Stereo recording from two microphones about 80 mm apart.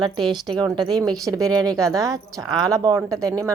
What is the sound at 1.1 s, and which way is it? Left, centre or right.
A woman's voice, right.